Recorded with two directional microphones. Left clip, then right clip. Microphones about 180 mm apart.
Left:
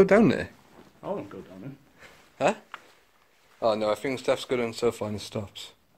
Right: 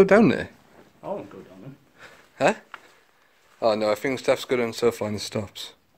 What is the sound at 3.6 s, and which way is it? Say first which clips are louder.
Speech: right 3 dB; 30° right (ahead or behind).